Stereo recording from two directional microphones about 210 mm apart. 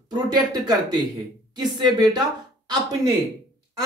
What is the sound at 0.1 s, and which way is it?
Speech, 20° right (ahead or behind).